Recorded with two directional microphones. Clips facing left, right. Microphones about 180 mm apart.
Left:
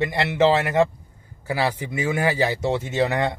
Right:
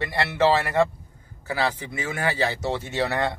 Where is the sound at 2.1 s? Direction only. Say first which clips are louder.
Left 3 dB; 20° left (ahead or behind).